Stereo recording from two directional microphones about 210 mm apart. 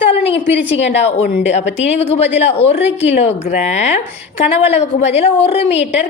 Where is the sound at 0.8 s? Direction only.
30° left (ahead or behind).